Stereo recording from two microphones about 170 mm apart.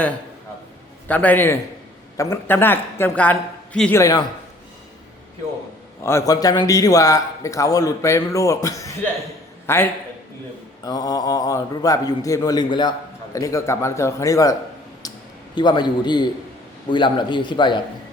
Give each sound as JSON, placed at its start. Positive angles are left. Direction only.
{"t": 1.0, "sound": "a man's voice", "side_deg": 10}
{"t": 4.0, "sound": "a man's voice", "side_deg": 20}
{"t": 6.0, "sound": "a man's voice", "side_deg": 15}
{"t": 15.0, "sound": "a sound", "side_deg": 20}
{"t": 15.5, "sound": "a man's voice", "side_deg": 25}